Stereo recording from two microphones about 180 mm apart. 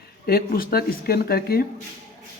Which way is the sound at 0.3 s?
55° left (ahead or behind).